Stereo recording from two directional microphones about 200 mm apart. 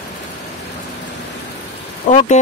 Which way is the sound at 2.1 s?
40° left (ahead or behind).